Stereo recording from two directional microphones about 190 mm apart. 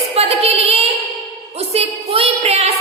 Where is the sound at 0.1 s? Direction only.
30° right (ahead or behind).